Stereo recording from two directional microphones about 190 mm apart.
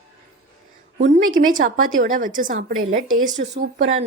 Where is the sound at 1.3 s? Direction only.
45° right (ahead or behind).